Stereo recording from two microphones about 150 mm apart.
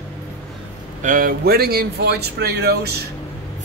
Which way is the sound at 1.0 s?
65° right (ahead or behind).